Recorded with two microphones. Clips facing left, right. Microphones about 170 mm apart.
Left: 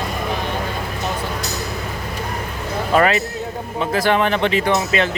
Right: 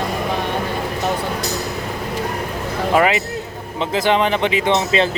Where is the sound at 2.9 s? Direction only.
15° right (ahead or behind).